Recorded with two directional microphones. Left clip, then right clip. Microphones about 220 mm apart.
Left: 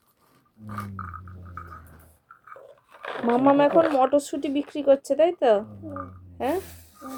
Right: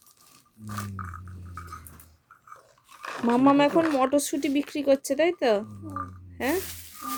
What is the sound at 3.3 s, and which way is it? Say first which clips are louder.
Speech: left 2 dB; 35° right (ahead or behind).